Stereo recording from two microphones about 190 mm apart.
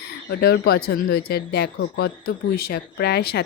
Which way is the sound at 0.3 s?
55° left (ahead or behind).